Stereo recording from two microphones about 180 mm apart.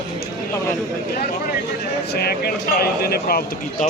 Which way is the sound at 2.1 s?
60° left (ahead or behind).